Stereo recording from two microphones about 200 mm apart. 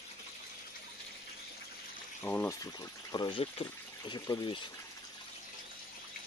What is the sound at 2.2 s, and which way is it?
Speech, 10° left (ahead or behind).